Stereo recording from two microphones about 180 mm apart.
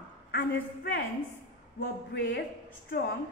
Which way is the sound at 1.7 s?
80° left.